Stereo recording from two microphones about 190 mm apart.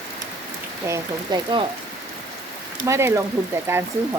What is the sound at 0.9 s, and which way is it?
Speech, 20° right (ahead or behind).